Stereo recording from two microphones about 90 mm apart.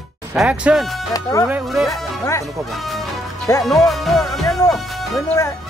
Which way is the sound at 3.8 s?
Centre (ahead or behind).